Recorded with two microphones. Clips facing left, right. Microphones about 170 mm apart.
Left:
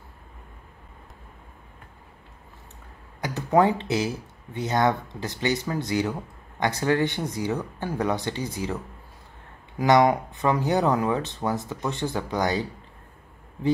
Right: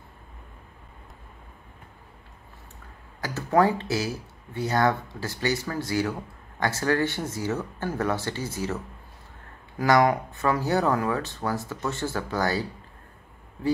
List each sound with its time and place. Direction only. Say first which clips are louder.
3.2 s speech: left 1 dB; 20° left (ahead or behind)